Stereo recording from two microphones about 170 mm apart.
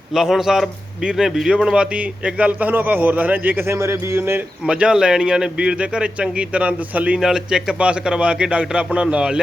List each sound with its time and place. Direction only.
0.1 s a man's voice: centre (ahead or behind)